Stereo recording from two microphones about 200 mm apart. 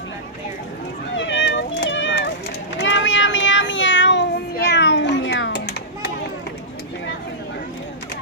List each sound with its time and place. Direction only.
1.1 s cat: 70° left (ahead or behind)
2.7 s meow: 65° left (ahead or behind)